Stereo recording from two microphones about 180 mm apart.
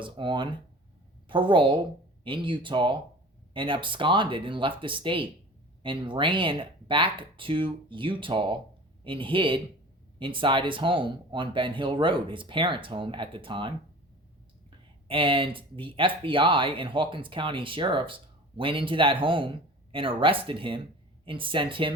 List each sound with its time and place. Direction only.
0.0 s speech: 25° right (ahead or behind)
15.0 s speech: 30° right (ahead or behind)